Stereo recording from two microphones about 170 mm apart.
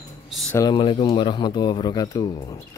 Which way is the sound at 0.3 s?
Centre (ahead or behind).